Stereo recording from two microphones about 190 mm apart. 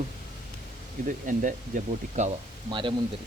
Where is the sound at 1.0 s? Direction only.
45° right (ahead or behind).